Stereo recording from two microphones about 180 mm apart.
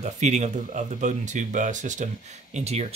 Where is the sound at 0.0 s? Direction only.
40° right (ahead or behind).